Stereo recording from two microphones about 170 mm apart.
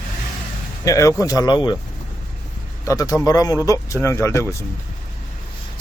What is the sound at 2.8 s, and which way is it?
Speech, 20° left (ahead or behind).